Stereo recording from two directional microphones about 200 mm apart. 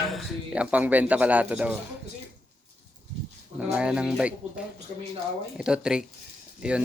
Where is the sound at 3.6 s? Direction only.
5° right (ahead or behind).